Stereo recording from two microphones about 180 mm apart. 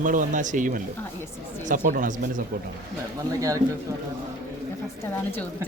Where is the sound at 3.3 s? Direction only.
20° right (ahead or behind).